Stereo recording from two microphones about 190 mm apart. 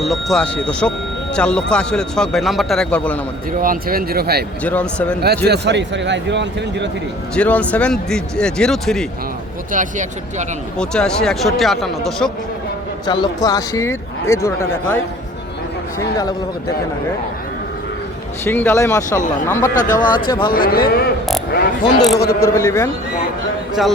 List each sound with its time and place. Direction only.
0.0 s speech: centre (ahead or behind)
3.6 s speech: 50° right (ahead or behind)
4.6 s speech: 5° left (ahead or behind)
5.5 s a man's voice: 65° right (ahead or behind)
7.3 s speech: 5° left (ahead or behind)
9.7 s speech: 40° right (ahead or behind)
10.8 s speech: 5° left (ahead or behind)
13.1 s speech: 25° left (ahead or behind)
18.4 s speech: 10° left (ahead or behind)
19.7 s a man's voice: 45° left (ahead or behind)
20.0 s speech: 25° left (ahead or behind)
20.5 s a man's voice: 50° left (ahead or behind)
22.4 s speech: 15° left (ahead or behind)